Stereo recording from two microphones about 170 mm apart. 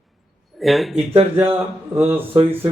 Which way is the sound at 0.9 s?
35° right (ahead or behind).